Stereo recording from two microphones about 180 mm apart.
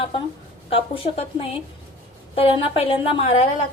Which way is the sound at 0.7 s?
30° left (ahead or behind).